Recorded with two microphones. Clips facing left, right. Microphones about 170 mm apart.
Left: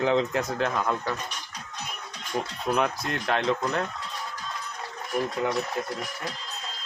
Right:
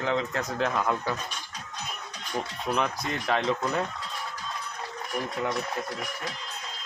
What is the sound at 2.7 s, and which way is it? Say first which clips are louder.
Speech: left 2 dB; 5° left (ahead or behind).